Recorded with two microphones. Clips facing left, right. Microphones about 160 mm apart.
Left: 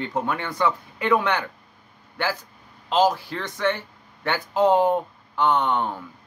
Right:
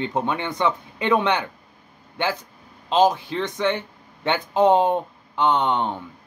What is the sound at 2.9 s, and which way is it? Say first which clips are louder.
Speech: right 2 dB; 20° right (ahead or behind).